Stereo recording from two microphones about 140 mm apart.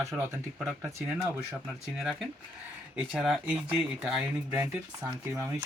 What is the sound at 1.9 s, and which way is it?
Speech, centre (ahead or behind).